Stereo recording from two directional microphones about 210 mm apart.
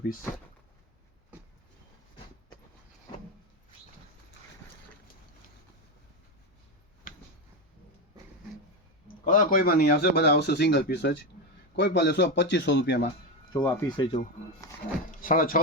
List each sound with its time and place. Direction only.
7.1 s a sound: 40° left (ahead or behind)
9.2 s a man's voice: 40° left (ahead or behind)
13.5 s speech: 10° left (ahead or behind)
15.2 s speech: 40° left (ahead or behind)